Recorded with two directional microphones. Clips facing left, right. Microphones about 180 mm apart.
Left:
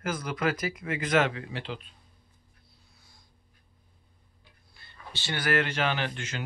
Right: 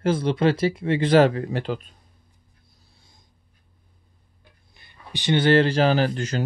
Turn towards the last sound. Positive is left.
turn(degrees=-40)  # may be behind; listen again after turning